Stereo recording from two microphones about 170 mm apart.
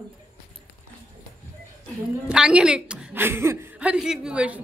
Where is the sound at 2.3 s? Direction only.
5° right (ahead or behind).